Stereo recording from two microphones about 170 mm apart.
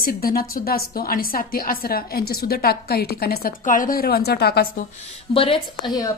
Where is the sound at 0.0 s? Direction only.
60° left (ahead or behind).